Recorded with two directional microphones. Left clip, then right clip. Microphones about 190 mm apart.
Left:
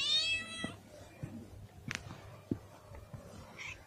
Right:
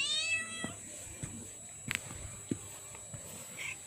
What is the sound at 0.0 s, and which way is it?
Cat, 10° left (ahead or behind).